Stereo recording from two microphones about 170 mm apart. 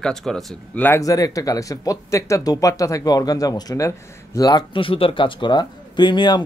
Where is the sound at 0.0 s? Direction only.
Centre (ahead or behind).